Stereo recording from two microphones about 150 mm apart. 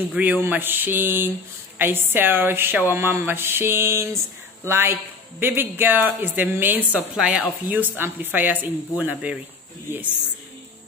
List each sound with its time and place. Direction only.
0.1 s a woman's voice: 10° right (ahead or behind)